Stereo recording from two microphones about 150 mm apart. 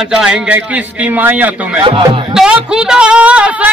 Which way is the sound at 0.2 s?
5° right (ahead or behind).